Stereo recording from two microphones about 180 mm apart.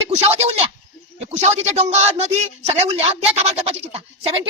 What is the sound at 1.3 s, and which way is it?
Speech, 40° right (ahead or behind).